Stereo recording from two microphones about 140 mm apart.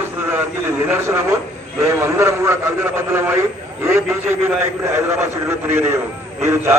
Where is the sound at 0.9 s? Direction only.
20° right (ahead or behind).